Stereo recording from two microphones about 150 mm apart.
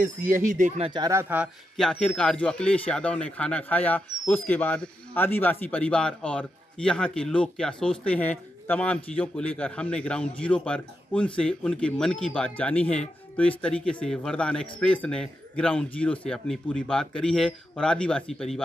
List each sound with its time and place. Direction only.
0.4 s speech: 60° right (ahead or behind)
0.8 s speech: 30° right (ahead or behind)
1.1 s speech: 10° right (ahead or behind)
1.8 s speech: 5° left (ahead or behind)